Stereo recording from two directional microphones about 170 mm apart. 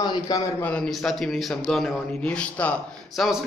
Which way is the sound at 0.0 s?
25° left (ahead or behind).